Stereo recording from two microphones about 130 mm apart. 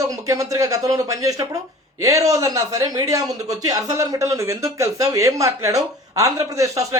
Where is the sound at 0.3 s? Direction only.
25° right (ahead or behind).